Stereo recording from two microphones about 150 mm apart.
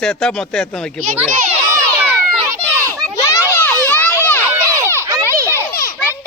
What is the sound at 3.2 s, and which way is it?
Crowd, 20° left (ahead or behind).